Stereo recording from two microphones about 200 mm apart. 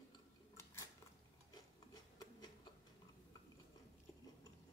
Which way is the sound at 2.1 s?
20° left (ahead or behind).